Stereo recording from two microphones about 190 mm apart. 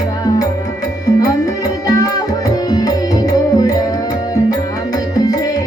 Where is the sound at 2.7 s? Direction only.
20° left (ahead or behind).